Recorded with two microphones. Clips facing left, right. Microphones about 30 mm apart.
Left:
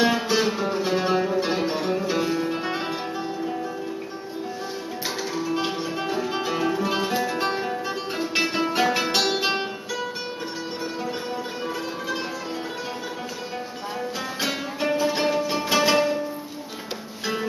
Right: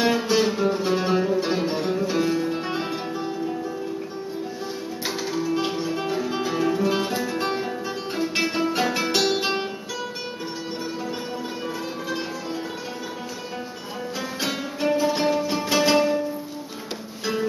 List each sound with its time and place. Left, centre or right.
0.0 s music: centre
5.3 s music: centre
14.4 s music: centre